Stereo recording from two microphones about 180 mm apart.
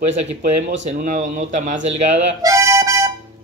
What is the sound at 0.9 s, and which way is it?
A man's voice, 50° right (ahead or behind).